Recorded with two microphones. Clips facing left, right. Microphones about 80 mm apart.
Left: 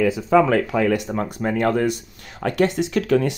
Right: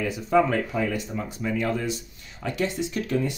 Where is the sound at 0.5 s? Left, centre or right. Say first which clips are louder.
Left 7 dB; left.